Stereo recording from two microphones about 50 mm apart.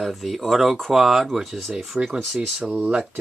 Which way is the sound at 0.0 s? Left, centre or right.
Centre.